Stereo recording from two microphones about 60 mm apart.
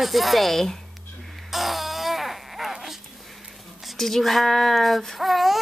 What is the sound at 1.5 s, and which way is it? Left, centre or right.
Music, centre.